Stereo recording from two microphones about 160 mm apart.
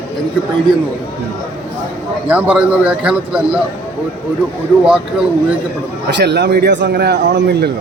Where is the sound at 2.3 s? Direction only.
10° right (ahead or behind).